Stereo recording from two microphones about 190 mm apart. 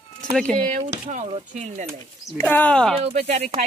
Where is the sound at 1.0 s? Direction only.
40° right (ahead or behind).